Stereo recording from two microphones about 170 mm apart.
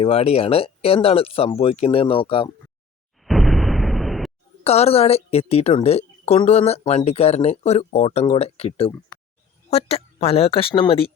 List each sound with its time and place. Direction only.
0.0 s a woman's voice: 35° left (ahead or behind)
3.2 s explosion: centre (ahead or behind)
4.6 s a woman's voice: 40° left (ahead or behind)